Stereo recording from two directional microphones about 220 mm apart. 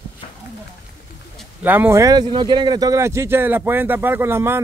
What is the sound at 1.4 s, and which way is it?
Speech, 10° right (ahead or behind).